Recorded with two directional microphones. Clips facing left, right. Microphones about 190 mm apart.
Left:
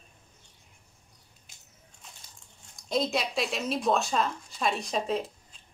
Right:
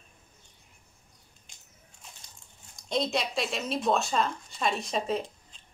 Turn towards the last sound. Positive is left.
turn(degrees=0)  # may be behind; listen again after turning